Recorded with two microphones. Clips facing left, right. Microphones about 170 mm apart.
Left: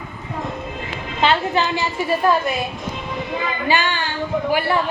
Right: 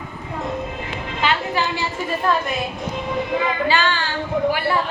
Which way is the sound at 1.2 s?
25° left (ahead or behind).